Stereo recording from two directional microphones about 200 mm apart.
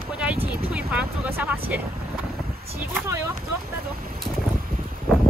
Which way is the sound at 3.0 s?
15° right (ahead or behind).